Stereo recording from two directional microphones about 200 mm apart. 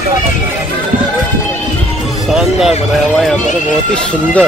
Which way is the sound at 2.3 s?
Centre (ahead or behind).